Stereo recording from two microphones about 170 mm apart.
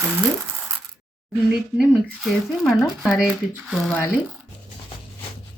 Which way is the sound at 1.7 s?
Centre (ahead or behind).